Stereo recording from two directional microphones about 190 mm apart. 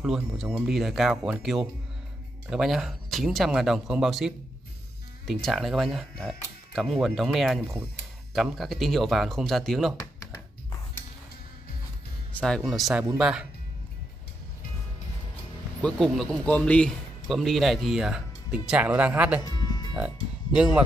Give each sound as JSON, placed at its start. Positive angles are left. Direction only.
{"t": 0.0, "sound": "a man's voice", "side_deg": -5}
{"t": 12.4, "sound": "a man's voice", "side_deg": 5}
{"t": 15.8, "sound": "a man's voice", "side_deg": 5}
{"t": 19.4, "sound": "music", "side_deg": 20}
{"t": 20.5, "sound": "a man's voice", "side_deg": -5}